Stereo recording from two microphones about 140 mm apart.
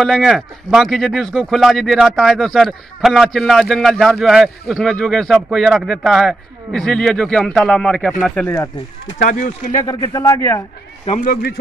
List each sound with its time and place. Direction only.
0.0 s a man's voice: centre (ahead or behind)
9.2 s speech: 65° left (ahead or behind)
9.8 s a man's voice: 25° left (ahead or behind)
11.1 s a man's voice: 90° left